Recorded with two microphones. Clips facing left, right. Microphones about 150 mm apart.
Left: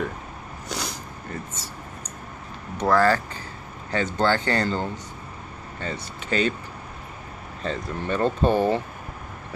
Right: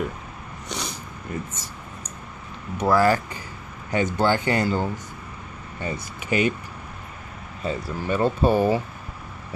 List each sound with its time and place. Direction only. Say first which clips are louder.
0.7 s a sound: left 1 dB; centre (ahead or behind)
1.3 s speech: right 4 dB; 15° right (ahead or behind)
2.8 s speech: right 1 dB; 10° right (ahead or behind)
7.6 s speech: right 1 dB; 5° right (ahead or behind)